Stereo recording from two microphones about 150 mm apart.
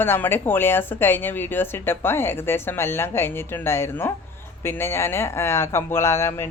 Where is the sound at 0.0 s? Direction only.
15° left (ahead or behind).